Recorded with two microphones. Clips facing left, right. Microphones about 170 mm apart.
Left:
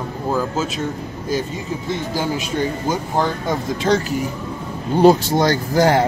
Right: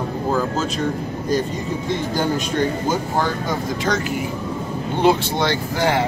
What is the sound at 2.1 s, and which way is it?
Speech, 5° left (ahead or behind).